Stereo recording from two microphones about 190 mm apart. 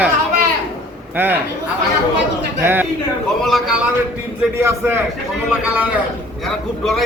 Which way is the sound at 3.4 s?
Centre (ahead or behind).